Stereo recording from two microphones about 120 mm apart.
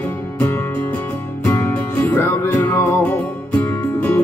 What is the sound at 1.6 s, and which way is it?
Music, 20° left (ahead or behind).